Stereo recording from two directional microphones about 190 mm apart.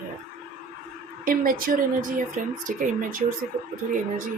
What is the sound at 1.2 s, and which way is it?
Speech, 45° right (ahead or behind).